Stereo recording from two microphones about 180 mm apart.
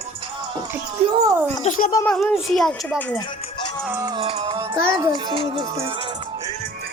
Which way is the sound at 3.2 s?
25° left (ahead or behind).